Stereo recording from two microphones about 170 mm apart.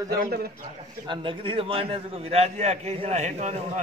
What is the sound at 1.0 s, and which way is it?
A man's voice, 30° right (ahead or behind).